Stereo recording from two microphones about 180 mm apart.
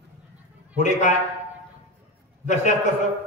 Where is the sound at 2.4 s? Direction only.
40° left (ahead or behind).